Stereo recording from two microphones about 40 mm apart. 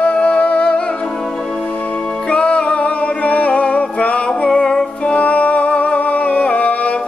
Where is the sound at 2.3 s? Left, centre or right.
Left.